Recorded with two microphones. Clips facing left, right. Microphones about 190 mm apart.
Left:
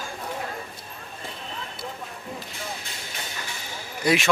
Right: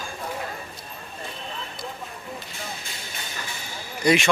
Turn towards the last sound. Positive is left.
turn(degrees=5)  # may be behind; listen again after turning